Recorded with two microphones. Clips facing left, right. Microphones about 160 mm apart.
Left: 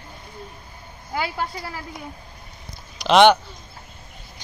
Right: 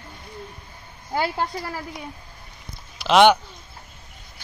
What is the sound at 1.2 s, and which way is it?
Speech, 40° right (ahead or behind).